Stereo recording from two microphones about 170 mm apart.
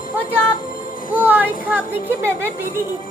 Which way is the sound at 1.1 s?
10° right (ahead or behind).